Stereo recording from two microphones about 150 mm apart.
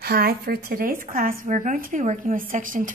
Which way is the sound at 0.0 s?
85° right.